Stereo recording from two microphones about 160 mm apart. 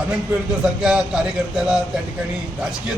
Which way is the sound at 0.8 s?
5° right (ahead or behind).